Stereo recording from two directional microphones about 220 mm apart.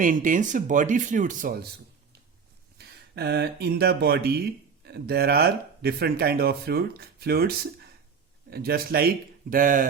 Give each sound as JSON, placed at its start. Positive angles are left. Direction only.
{"t": 0.0, "sound": "speech", "side_deg": -35}